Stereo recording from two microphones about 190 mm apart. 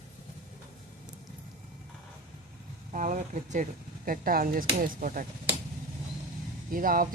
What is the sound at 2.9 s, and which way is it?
Speech, 40° right (ahead or behind).